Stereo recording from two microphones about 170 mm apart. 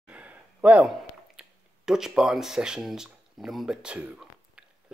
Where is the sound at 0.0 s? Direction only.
10° right (ahead or behind).